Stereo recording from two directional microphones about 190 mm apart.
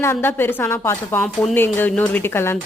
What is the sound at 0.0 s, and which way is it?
A woman's voice, 10° left (ahead or behind).